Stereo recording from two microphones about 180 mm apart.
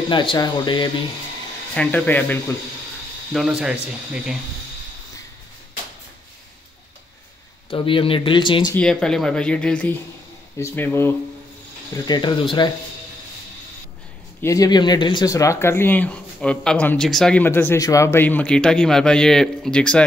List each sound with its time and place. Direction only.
0.1 s speech: 25° left (ahead or behind)
1.7 s speech: 10° left (ahead or behind)
3.3 s speech: 5° right (ahead or behind)
7.7 s speech: 30° left (ahead or behind)
8.7 s speech: 5° left (ahead or behind)
12.1 s speech: 25° left (ahead or behind)
14.4 s speech: 20° left (ahead or behind)